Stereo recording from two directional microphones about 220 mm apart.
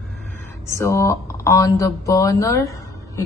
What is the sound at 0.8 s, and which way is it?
Speech, 15° left (ahead or behind).